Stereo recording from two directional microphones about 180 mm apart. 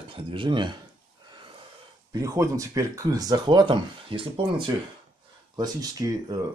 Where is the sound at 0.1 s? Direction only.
30° right (ahead or behind).